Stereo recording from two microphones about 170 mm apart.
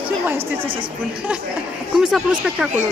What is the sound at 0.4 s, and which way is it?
Speech, 35° right (ahead or behind).